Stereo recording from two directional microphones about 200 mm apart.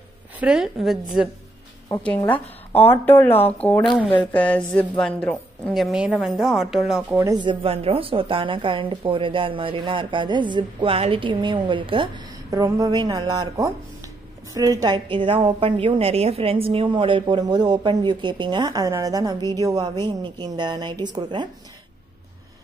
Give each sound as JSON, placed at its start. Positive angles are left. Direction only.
{"t": 0.4, "sound": "a woman's voice", "side_deg": -5}
{"t": 1.9, "sound": "a woman's voice", "side_deg": 10}
{"t": 7.3, "sound": "a woman's voice", "side_deg": -25}